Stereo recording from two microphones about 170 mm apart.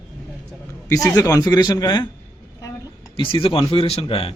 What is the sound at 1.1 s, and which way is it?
Speech, 20° left (ahead or behind).